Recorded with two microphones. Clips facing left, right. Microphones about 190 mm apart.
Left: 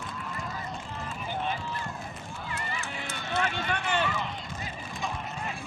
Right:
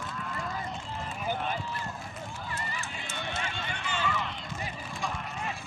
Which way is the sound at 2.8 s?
65° left (ahead or behind).